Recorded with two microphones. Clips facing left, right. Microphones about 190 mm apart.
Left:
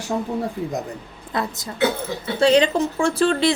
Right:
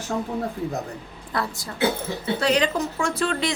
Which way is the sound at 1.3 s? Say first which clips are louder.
Left 3 dB; 20° left (ahead or behind).